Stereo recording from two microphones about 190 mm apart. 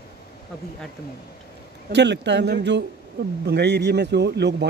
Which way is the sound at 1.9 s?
65° right (ahead or behind).